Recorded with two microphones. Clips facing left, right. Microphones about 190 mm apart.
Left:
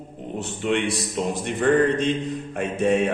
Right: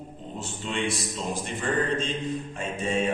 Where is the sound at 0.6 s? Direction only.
65° left (ahead or behind).